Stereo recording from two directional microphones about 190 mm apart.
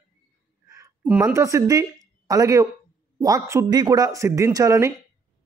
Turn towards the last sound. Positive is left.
turn(degrees=-15)  # may be behind; listen again after turning